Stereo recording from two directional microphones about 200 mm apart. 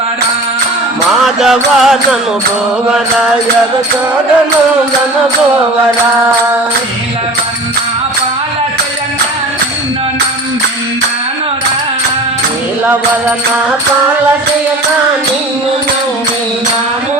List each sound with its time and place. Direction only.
1.1 s music: centre (ahead or behind)